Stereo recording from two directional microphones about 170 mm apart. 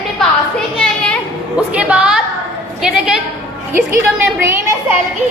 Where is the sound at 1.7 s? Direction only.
10° right (ahead or behind).